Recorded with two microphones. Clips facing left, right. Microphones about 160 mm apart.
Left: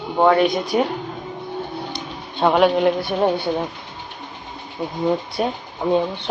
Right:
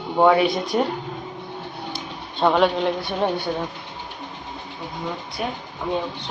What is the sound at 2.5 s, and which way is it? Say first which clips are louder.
Speech: left 4 dB; 5° left (ahead or behind).